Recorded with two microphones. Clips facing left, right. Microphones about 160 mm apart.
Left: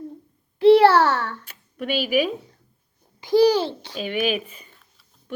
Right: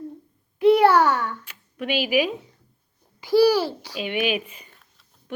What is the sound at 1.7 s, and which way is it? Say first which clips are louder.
Speech: even; 45° left (ahead or behind).